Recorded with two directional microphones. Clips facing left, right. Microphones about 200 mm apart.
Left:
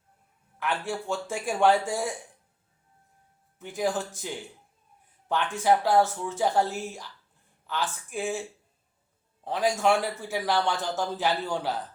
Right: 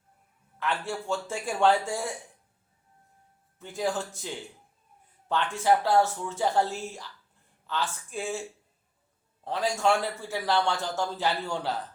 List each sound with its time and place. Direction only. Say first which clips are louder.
0.6 s a man's voice: left 1 dB; 15° left (ahead or behind)
3.6 s a man's voice: left 2 dB; 15° left (ahead or behind)
5.3 s a man's voice: left 1 dB; 15° left (ahead or behind)